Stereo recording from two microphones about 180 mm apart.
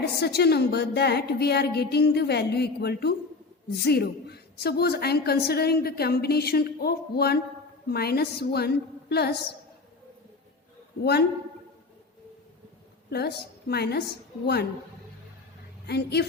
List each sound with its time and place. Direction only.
0.0 s a woman's voice: 65° left (ahead or behind)
13.1 s a woman's voice: 65° left (ahead or behind)
15.9 s a woman's voice: 65° left (ahead or behind)